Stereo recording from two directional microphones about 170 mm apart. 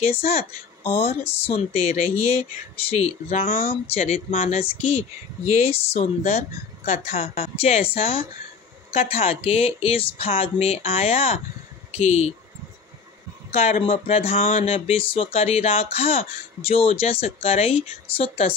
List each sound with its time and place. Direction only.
0.0 s speech: 35° left (ahead or behind)
13.5 s speech: 40° left (ahead or behind)